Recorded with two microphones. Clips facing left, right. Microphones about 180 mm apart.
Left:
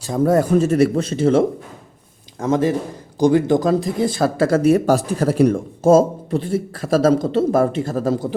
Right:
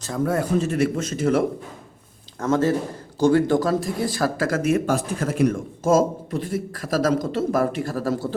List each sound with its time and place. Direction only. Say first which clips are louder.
0.3 s speech: left 7 dB; 40° left (ahead or behind)
2.4 s speech: left 2 dB; 15° left (ahead or behind)